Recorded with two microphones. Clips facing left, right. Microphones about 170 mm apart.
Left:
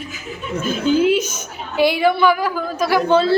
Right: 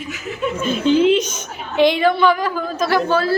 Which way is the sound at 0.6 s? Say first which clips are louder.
Right 1 dB; 5° left (ahead or behind).